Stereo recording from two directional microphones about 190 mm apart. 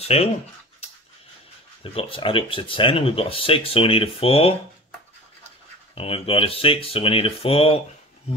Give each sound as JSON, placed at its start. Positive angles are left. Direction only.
{"t": 0.0, "sound": "speech", "side_deg": 30}
{"t": 1.8, "sound": "speech", "side_deg": 30}
{"t": 5.9, "sound": "speech", "side_deg": 30}